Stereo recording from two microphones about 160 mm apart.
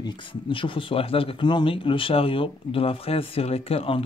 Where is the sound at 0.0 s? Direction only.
30° left (ahead or behind).